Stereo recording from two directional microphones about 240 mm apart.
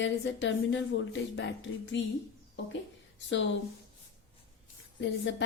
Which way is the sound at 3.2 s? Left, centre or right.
Left.